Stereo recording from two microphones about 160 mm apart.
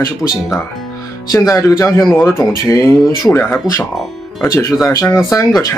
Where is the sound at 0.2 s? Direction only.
10° left (ahead or behind).